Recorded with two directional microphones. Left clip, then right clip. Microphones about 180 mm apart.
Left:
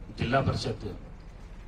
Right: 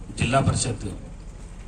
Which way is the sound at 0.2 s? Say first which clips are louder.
Right 5 dB; 20° left (ahead or behind).